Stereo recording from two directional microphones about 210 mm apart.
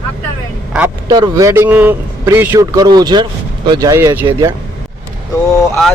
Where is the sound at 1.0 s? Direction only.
15° right (ahead or behind).